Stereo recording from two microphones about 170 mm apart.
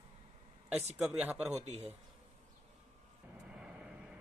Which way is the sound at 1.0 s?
5° right (ahead or behind).